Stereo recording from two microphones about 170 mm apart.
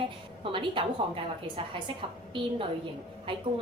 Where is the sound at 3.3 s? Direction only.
30° right (ahead or behind).